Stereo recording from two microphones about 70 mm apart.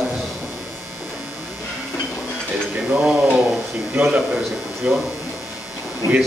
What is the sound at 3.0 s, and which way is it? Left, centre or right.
A man's voice, centre.